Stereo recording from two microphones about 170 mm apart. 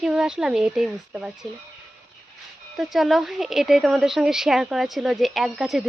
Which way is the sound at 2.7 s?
Centre (ahead or behind).